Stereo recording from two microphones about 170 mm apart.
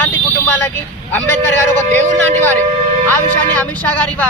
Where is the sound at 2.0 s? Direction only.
45° right (ahead or behind).